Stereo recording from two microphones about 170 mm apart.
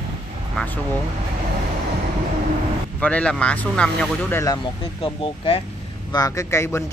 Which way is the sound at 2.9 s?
10° left (ahead or behind).